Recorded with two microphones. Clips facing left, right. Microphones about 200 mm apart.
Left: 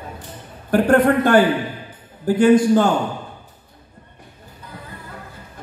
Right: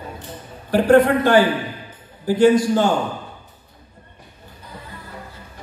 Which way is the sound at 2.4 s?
55° left (ahead or behind).